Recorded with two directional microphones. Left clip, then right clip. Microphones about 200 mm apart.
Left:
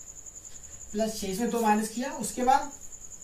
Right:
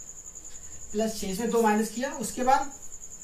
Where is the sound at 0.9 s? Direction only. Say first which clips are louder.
Even; 15° left (ahead or behind).